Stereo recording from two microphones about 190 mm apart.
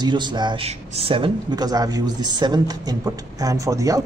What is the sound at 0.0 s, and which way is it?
A man's voice, 25° right (ahead or behind).